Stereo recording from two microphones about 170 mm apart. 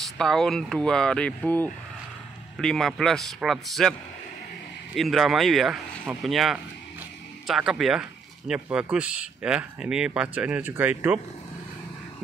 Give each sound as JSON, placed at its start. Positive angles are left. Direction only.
{"t": 0.0, "sound": "speech", "side_deg": 0}
{"t": 4.9, "sound": "speech", "side_deg": 0}